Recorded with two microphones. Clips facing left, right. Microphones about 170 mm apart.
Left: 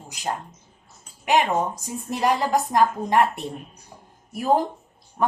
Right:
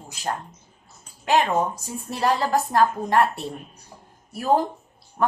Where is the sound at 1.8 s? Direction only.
15° left (ahead or behind).